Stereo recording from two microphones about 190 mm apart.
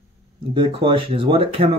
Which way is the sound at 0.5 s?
25° right (ahead or behind).